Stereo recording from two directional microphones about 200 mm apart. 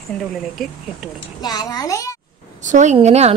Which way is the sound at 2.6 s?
35° right (ahead or behind).